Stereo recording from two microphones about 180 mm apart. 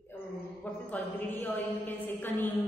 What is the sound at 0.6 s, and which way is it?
A woman's voice, 10° left (ahead or behind).